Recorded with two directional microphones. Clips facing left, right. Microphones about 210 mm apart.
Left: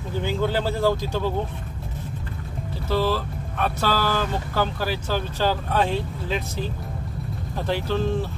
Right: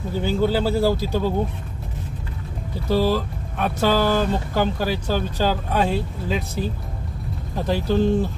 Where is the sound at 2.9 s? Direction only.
15° right (ahead or behind).